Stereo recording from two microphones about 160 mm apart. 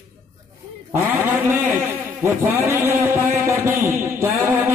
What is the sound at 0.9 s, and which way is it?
A man's voice, 15° right (ahead or behind).